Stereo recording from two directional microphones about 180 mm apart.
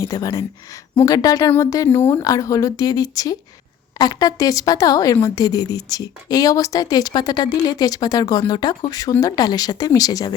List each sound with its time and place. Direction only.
0.0 s a woman's voice: 20° left (ahead or behind)